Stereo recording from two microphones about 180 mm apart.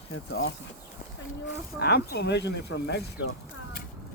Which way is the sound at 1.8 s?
60° left (ahead or behind).